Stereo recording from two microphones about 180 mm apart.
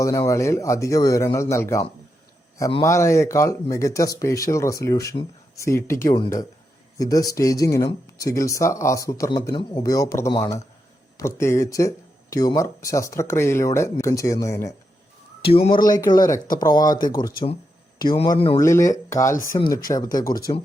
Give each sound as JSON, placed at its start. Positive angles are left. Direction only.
{"t": 0.0, "sound": "speech", "side_deg": 15}
{"t": 15.5, "sound": "speech", "side_deg": 30}